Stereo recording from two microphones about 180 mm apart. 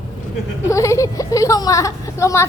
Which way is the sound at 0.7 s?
15° left (ahead or behind).